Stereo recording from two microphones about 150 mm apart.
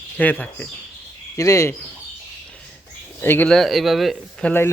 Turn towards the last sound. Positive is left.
turn(degrees=0)  # may be behind; listen again after turning